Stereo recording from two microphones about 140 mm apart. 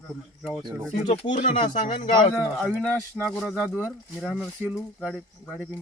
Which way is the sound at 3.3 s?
Centre (ahead or behind).